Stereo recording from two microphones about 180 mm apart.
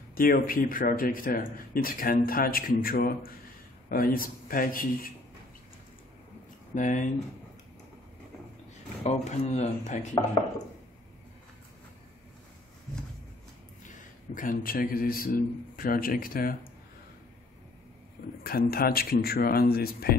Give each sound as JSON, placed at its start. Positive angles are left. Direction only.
{"t": 0.1, "sound": "speech", "side_deg": 55}
{"t": 6.7, "sound": "speech", "side_deg": 45}
{"t": 9.0, "sound": "speech", "side_deg": 40}
{"t": 13.8, "sound": "a man's voice", "side_deg": 45}
{"t": 18.4, "sound": "speech", "side_deg": 55}